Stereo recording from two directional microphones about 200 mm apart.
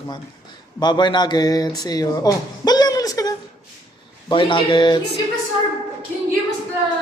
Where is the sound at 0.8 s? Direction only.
20° left (ahead or behind).